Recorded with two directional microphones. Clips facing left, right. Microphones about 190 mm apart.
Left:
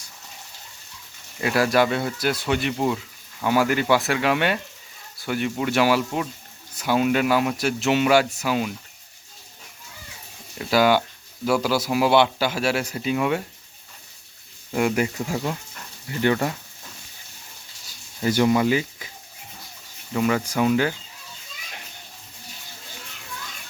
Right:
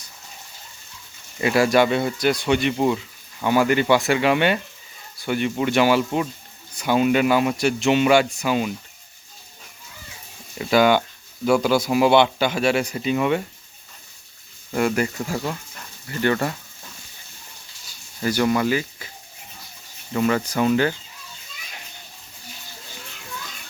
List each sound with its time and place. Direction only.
1.4 s speech: centre (ahead or behind)
10.6 s speech: 5° left (ahead or behind)
14.8 s speech: 10° left (ahead or behind)
18.2 s speech: 20° left (ahead or behind)
20.1 s speech: 10° left (ahead or behind)